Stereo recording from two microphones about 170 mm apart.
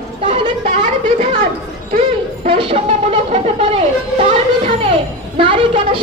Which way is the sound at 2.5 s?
35° right (ahead or behind).